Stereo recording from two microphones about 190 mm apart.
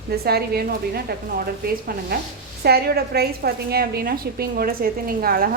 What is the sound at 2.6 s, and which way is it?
A woman's voice, 55° right (ahead or behind).